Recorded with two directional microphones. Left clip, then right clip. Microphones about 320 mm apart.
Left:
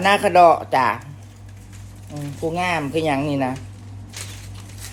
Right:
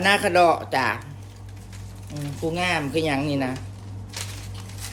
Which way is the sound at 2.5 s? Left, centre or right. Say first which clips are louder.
Left 2 dB; centre.